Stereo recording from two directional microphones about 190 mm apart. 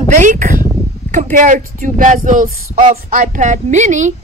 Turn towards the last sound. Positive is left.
turn(degrees=-40)  # may be behind; listen again after turning